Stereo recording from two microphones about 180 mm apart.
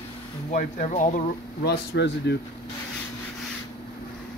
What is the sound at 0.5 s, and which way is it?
Speech, 45° left (ahead or behind).